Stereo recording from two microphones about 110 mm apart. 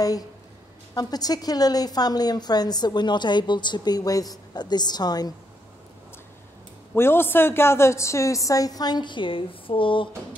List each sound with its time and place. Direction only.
0.9 s a woman's voice: 35° left (ahead or behind)
6.9 s a woman's voice: 20° left (ahead or behind); by 10.0 s 50° left (ahead or behind)